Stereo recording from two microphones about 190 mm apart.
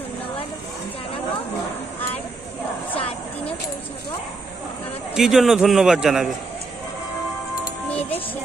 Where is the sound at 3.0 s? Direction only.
30° left (ahead or behind).